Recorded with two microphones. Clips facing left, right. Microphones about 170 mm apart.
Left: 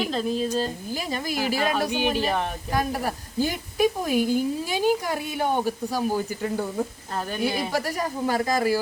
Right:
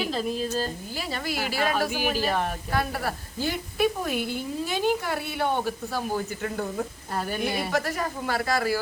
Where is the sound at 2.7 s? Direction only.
15° left (ahead or behind).